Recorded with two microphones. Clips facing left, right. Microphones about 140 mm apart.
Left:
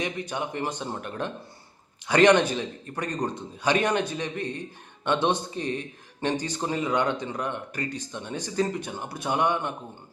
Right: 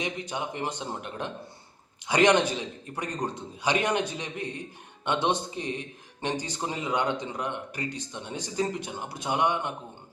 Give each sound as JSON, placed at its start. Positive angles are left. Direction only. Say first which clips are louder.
{"t": 0.0, "sound": "speech", "louder": "left 2 dB", "side_deg": -15}